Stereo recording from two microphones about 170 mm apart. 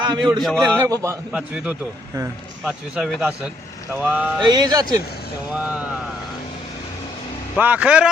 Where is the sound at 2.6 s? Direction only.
5° right (ahead or behind).